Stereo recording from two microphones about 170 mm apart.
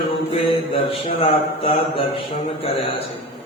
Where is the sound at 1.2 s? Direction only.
35° left (ahead or behind).